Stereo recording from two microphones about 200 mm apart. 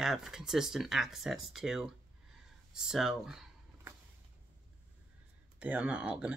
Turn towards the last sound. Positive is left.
turn(degrees=-5)  # may be behind; listen again after turning